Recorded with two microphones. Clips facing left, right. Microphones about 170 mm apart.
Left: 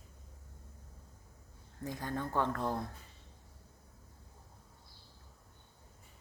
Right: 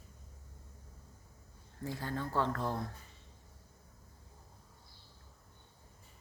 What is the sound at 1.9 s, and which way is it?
Speech, 15° left (ahead or behind).